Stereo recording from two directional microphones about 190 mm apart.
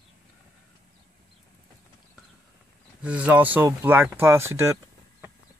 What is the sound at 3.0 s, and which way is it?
Speech, 5° right (ahead or behind).